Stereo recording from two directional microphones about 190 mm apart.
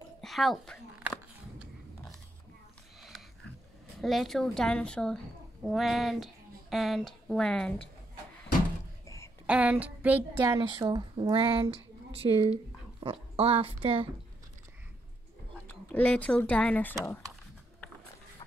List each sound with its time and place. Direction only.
0.2 s speech: centre (ahead or behind)
4.0 s a woman's voice: centre (ahead or behind)
9.0 s a sound: 15° left (ahead or behind)
9.5 s a woman's voice: 5° right (ahead or behind); by 14.1 s 30° right (ahead or behind)
15.5 s speech: 10° left (ahead or behind)
17.0 s a sound: 5° left (ahead or behind)